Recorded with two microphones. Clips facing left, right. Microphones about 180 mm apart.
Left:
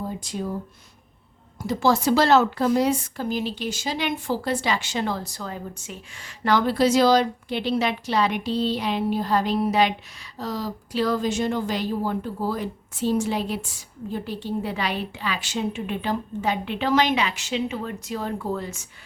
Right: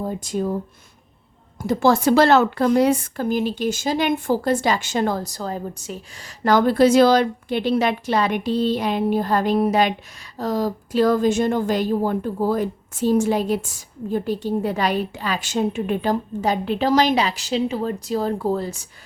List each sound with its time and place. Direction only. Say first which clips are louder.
0.0 s a woman's voice: right 6 dB; 50° right (ahead or behind)
1.6 s a woman's voice: right 4 dB; 50° right (ahead or behind); by 18.9 s 35° right (ahead or behind)